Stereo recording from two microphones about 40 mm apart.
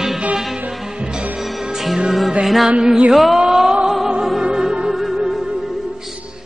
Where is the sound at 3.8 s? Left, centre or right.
Centre.